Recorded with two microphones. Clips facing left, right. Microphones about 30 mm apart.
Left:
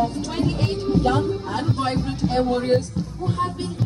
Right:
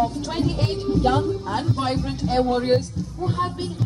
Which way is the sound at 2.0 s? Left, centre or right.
Centre.